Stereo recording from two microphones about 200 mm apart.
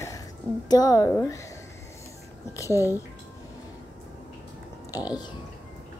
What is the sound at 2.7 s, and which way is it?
Speech, 10° right (ahead or behind).